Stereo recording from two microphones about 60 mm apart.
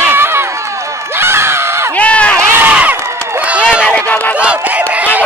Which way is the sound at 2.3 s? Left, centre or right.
Right.